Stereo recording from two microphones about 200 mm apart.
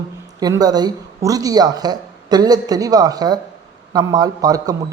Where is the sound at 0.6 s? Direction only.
20° right (ahead or behind).